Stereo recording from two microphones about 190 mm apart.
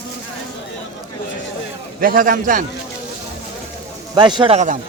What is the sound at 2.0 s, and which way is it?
Speech, 50° right (ahead or behind).